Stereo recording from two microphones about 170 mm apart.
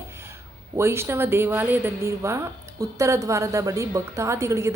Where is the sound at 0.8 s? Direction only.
15° right (ahead or behind).